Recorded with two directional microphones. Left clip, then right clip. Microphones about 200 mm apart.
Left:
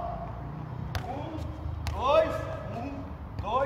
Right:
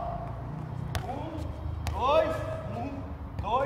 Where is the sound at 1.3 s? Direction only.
20° left (ahead or behind).